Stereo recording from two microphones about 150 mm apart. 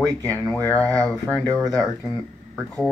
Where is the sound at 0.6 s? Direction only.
15° left (ahead or behind).